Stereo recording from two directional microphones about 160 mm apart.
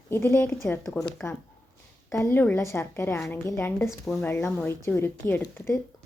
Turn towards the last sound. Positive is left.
turn(degrees=15)  # may be behind; listen again after turning